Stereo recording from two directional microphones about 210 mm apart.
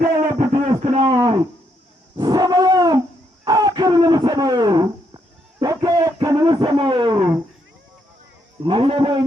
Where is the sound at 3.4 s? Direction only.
20° right (ahead or behind).